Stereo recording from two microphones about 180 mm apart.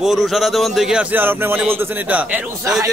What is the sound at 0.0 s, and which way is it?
A man's voice, centre (ahead or behind).